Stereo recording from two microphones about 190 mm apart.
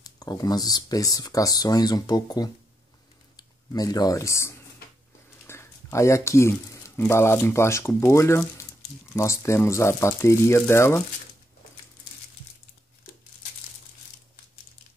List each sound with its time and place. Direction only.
0.0 s speech: 20° left (ahead or behind)